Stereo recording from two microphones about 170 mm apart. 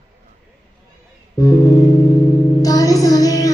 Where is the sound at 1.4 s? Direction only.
20° left (ahead or behind).